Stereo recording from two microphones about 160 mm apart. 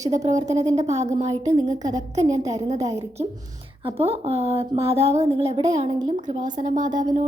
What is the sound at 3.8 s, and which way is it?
A woman's voice, 35° right (ahead or behind).